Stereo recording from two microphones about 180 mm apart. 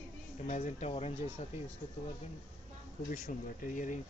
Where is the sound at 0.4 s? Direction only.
40° left (ahead or behind).